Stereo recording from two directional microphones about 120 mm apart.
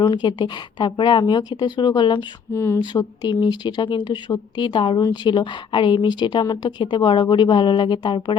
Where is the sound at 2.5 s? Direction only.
20° left (ahead or behind).